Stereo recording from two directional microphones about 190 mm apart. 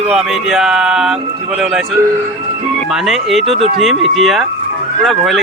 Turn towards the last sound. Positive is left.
turn(degrees=0)  # may be behind; listen again after turning